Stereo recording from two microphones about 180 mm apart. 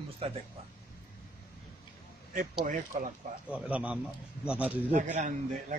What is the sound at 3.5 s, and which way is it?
Speech, 5° right (ahead or behind).